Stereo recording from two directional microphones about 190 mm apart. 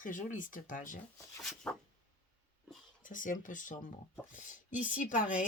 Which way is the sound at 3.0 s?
45° left (ahead or behind).